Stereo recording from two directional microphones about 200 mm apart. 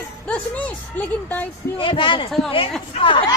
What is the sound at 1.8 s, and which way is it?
Speech, 25° left (ahead or behind).